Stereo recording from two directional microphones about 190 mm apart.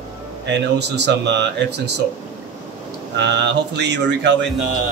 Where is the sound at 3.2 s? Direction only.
65° right (ahead or behind).